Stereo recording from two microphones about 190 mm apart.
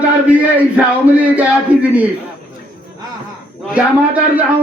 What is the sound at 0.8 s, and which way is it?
Speech, 5° right (ahead or behind).